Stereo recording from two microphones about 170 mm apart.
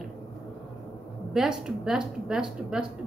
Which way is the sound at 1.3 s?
Centre (ahead or behind).